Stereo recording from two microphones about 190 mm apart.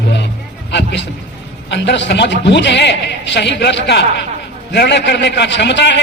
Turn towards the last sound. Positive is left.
turn(degrees=65)  # may be behind; listen again after turning